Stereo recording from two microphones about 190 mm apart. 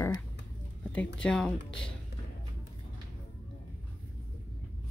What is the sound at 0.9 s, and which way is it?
Speech, 5° left (ahead or behind).